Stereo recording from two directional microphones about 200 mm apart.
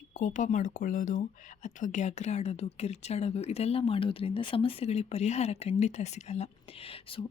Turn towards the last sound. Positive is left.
turn(degrees=25)  # may be behind; listen again after turning